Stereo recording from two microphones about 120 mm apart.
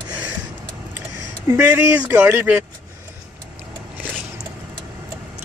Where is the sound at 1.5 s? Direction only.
20° right (ahead or behind).